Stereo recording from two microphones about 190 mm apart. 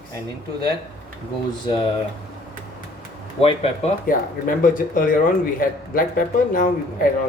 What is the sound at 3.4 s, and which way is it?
Speech, 30° left (ahead or behind).